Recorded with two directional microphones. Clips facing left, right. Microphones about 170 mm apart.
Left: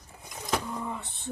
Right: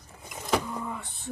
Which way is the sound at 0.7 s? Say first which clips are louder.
Even; 20° left (ahead or behind).